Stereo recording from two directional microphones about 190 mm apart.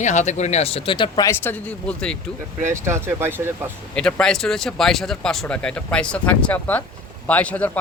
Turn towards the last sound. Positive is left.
turn(degrees=10)  # may be behind; listen again after turning